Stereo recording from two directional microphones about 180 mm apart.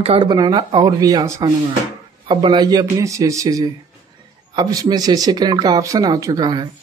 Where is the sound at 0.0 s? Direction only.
30° right (ahead or behind).